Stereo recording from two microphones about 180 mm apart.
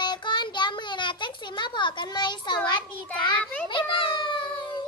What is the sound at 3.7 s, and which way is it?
Children playing, 25° left (ahead or behind).